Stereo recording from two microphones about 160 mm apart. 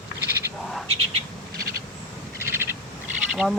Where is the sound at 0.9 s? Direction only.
40° right (ahead or behind).